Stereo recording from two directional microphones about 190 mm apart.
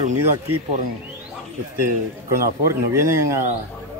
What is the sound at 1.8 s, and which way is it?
A man's voice, 15° right (ahead or behind).